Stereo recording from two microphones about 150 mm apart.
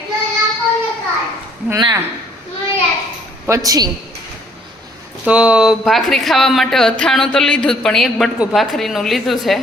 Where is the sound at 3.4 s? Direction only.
20° right (ahead or behind).